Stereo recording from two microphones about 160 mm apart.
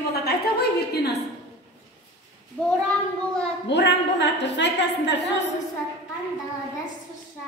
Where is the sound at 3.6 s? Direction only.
90° left.